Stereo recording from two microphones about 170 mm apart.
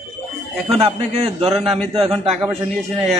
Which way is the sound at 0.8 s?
35° right (ahead or behind).